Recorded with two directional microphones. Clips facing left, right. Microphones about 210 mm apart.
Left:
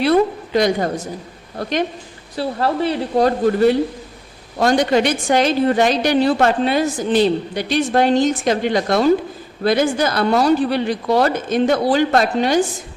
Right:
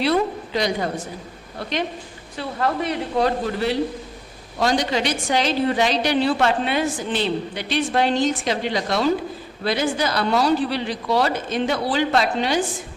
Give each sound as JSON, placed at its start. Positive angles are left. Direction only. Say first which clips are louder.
{"t": 0.0, "sound": "a woman's voice", "louder": "left 5 dB", "side_deg": 50}
{"t": 2.3, "sound": "a woman's voice", "louder": "left 4 dB", "side_deg": 35}